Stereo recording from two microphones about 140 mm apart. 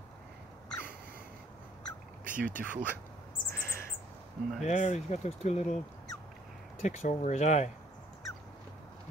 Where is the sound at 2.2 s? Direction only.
75° right (ahead or behind).